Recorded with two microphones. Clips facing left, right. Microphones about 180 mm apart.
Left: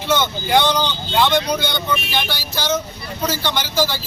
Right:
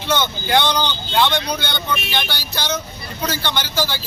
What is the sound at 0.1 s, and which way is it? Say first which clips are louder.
A man's voice: left 1 dB; 5° left (ahead or behind).